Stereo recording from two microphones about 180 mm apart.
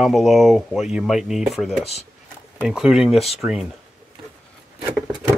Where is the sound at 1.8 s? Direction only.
35° left (ahead or behind).